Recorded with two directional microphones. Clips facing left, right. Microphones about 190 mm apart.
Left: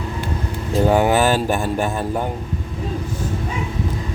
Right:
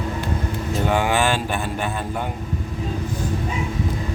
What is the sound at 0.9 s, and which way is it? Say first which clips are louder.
Speech: left 4 dB; 40° left (ahead or behind).